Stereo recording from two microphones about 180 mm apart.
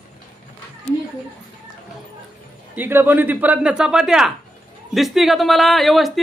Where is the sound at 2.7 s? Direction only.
10° right (ahead or behind).